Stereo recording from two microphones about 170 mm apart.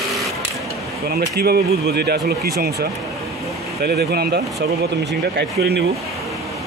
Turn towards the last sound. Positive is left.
turn(degrees=-80)